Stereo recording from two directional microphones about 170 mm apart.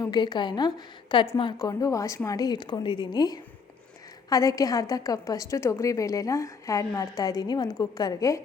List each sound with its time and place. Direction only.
0.0 s a woman's voice: 25° left (ahead or behind)